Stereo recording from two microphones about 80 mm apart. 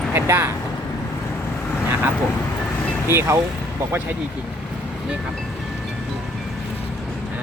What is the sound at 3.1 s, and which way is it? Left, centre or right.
Speech, right.